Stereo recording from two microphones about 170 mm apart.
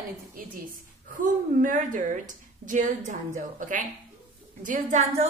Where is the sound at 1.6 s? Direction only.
50° right (ahead or behind).